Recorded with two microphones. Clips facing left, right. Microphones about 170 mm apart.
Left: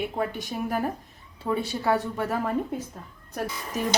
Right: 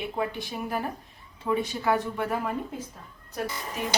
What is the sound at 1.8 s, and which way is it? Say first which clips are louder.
Speech: left 1 dB; 40° left (ahead or behind).